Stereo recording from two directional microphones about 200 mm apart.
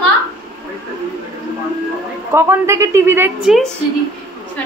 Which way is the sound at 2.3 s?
15° right (ahead or behind).